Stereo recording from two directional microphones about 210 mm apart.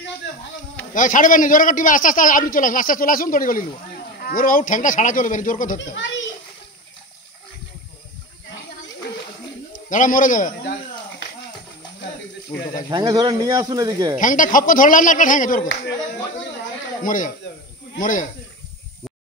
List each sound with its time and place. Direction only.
0.9 s a man's voice: 40° left (ahead or behind)
9.7 s a man's voice: 40° left (ahead or behind)
12.9 s speech: 20° right (ahead or behind)
14.2 s a man's voice: 40° left (ahead or behind)
17.0 s a man's voice: 40° left (ahead or behind)